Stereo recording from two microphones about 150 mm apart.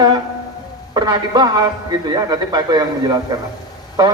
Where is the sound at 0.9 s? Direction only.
30° right (ahead or behind).